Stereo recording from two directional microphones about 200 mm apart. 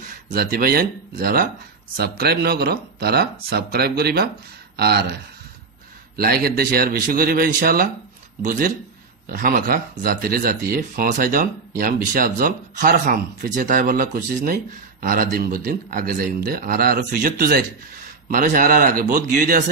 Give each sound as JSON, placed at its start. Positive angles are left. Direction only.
{"t": 0.3, "sound": "speech", "side_deg": -50}